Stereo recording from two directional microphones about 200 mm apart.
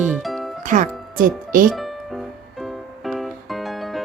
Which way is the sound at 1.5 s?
45° right (ahead or behind).